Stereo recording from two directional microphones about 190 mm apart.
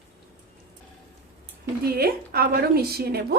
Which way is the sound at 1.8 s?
55° right (ahead or behind).